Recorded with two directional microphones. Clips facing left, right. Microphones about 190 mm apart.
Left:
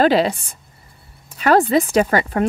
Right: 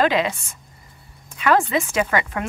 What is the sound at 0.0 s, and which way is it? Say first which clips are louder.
Speech: left 4 dB; 35° left (ahead or behind).